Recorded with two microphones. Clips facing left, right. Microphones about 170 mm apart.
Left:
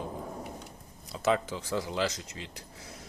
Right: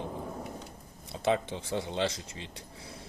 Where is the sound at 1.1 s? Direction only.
25° right (ahead or behind).